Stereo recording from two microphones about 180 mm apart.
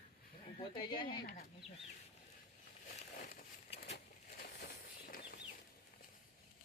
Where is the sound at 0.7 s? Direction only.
25° left (ahead or behind).